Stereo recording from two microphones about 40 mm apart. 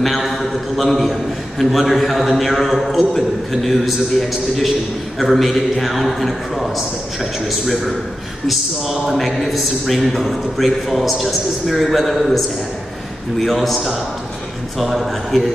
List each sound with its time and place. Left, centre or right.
0.0 s a sound: centre
1.6 s a man's voice: centre
14.8 s a man's voice: centre